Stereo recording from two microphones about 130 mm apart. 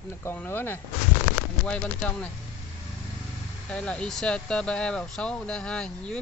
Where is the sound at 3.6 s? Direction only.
10° left (ahead or behind).